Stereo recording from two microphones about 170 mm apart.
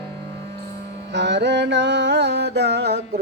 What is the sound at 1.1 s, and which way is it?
Mantra, 90° right.